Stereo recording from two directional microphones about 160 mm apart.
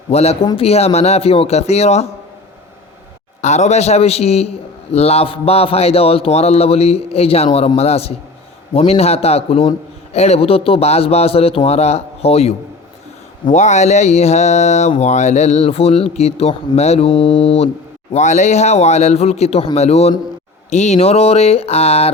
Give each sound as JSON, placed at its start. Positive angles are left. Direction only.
{"t": 0.1, "sound": "a man's voice", "side_deg": 40}
{"t": 3.4, "sound": "a man's voice", "side_deg": 45}
{"t": 18.1, "sound": "a man's voice", "side_deg": 45}